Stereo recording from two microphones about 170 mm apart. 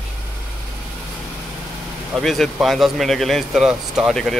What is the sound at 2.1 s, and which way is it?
Speech, centre (ahead or behind).